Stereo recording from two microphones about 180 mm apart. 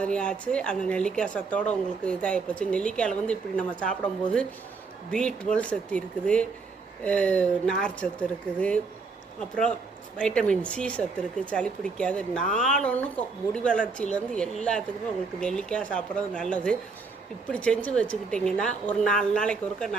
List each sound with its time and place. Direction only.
0.0 s speech: 5° left (ahead or behind)